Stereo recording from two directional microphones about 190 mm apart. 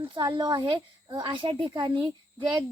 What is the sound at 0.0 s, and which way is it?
Speech, 25° right (ahead or behind).